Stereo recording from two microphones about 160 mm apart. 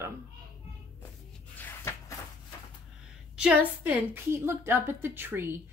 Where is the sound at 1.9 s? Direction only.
15° left (ahead or behind).